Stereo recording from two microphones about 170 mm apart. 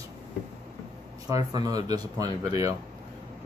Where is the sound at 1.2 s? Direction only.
20° right (ahead or behind).